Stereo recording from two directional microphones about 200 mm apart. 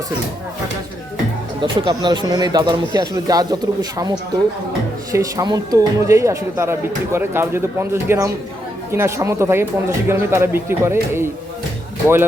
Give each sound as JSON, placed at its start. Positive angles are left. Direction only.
{"t": 1.6, "sound": "speech", "side_deg": -20}
{"t": 5.1, "sound": "speech", "side_deg": -15}